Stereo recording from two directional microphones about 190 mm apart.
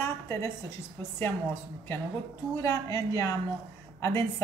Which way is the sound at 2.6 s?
20° left (ahead or behind).